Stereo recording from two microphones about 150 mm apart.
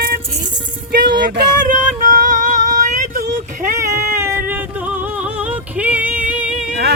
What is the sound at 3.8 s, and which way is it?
Music, 20° right (ahead or behind).